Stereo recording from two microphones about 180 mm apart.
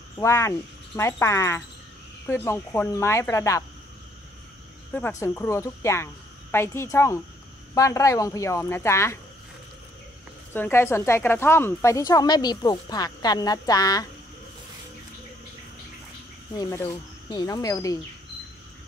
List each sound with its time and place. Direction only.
0.2 s speech: 15° left (ahead or behind)
5.2 s speech: 15° left (ahead or behind)
10.5 s a woman's voice: 10° left (ahead or behind)
16.5 s a woman's voice: 20° left (ahead or behind)